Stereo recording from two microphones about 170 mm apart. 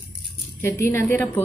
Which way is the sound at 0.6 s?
15° left (ahead or behind).